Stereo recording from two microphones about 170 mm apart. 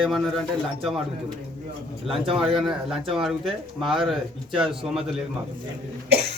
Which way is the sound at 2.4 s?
Centre (ahead or behind).